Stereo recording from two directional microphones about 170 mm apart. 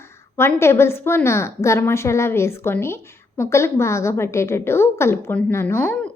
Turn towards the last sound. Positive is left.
turn(degrees=15)  # may be behind; listen again after turning